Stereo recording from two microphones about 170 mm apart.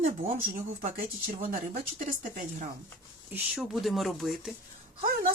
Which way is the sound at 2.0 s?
45° right (ahead or behind).